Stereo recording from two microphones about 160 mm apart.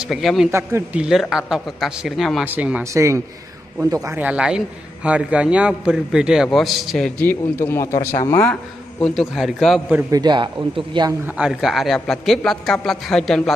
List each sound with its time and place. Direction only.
0.1 s a man's voice: centre (ahead or behind)
0.5 s speech: 15° right (ahead or behind)
1.3 s a man's voice: 5° right (ahead or behind)
7.2 s a man's voice: 15° left (ahead or behind)
9.0 s a man's voice: centre (ahead or behind)
10.1 s a man's voice: 25° right (ahead or behind)
11.2 s a man's voice: 5° right (ahead or behind)